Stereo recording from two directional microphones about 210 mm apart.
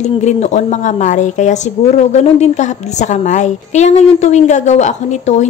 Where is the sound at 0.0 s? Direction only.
30° left (ahead or behind).